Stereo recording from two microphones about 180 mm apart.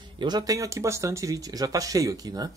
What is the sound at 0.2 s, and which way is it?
Speech, 20° right (ahead or behind).